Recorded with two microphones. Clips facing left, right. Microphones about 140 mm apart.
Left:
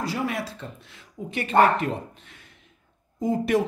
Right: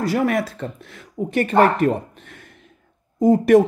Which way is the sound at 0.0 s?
55° right (ahead or behind).